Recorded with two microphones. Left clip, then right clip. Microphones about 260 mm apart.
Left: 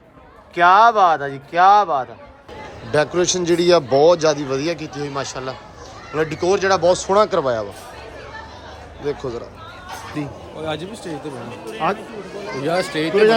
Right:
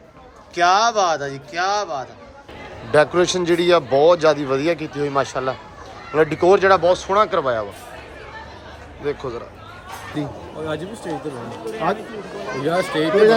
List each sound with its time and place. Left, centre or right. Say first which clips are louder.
0.5 s a man's voice: left 4 dB; centre
9.0 s a man's voice: left 1 dB; centre
10.2 s speech: right 3 dB; centre